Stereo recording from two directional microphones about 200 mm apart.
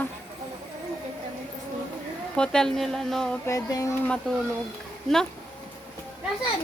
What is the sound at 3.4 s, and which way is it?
Speech, 15° left (ahead or behind).